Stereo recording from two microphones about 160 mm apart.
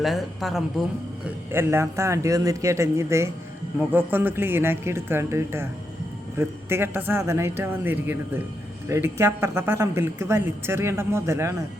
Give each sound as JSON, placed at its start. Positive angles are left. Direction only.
{"t": 0.0, "sound": "speech", "side_deg": 0}
{"t": 1.5, "sound": "speech", "side_deg": -15}